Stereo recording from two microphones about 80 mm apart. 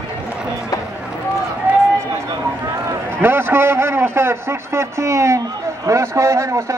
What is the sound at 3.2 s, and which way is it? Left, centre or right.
A man's voice, right.